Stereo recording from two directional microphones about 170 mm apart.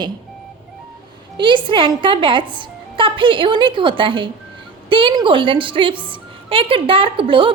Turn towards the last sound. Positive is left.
turn(degrees=-30)  # may be behind; listen again after turning